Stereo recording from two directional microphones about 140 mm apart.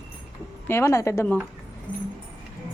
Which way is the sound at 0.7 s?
20° left (ahead or behind).